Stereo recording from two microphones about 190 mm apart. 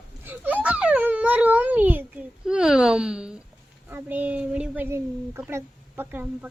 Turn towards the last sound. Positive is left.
turn(degrees=-10)  # may be behind; listen again after turning